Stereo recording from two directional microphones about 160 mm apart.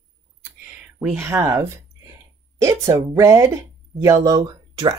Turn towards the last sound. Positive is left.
turn(degrees=-25)  # may be behind; listen again after turning